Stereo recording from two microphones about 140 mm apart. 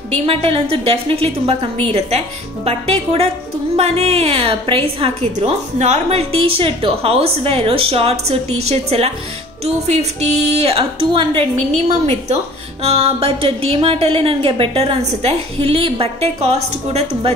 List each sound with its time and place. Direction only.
0.1 s a woman's voice: 45° right (ahead or behind)